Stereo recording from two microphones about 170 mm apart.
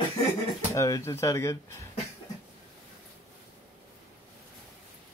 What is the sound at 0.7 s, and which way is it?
Speech, 20° left (ahead or behind).